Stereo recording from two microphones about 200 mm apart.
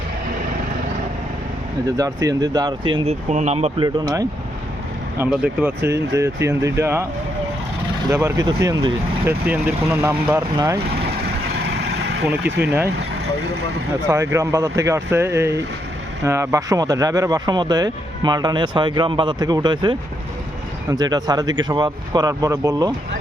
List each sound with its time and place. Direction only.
2.0 s speech: 15° right (ahead or behind)
3.2 s speech: 35° right (ahead or behind)
3.8 s speech: 20° right (ahead or behind)
5.2 s speech: 5° right (ahead or behind)
8.1 s speech: 15° right (ahead or behind)
12.4 s speech: 55° right (ahead or behind)
14.1 s speech: 15° right (ahead or behind)